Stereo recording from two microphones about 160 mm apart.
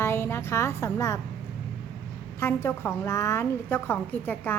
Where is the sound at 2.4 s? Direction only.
15° left (ahead or behind).